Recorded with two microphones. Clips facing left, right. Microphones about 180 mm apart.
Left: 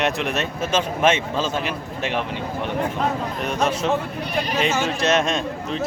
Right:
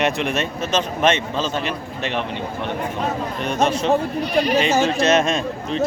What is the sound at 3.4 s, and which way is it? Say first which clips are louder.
A man's voice: right 3 dB; centre (ahead or behind).